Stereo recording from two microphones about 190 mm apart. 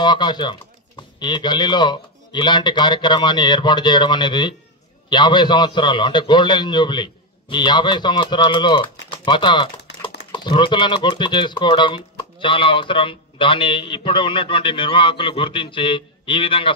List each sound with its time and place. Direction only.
0.0 s speech: 25° left (ahead or behind)